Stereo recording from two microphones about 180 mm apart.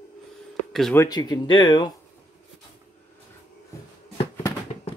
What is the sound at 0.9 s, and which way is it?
Speech, 20° left (ahead or behind).